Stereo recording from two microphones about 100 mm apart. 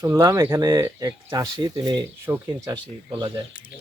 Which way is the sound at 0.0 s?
30° right (ahead or behind).